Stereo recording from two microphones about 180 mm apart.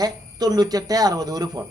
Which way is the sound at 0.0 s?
20° right (ahead or behind).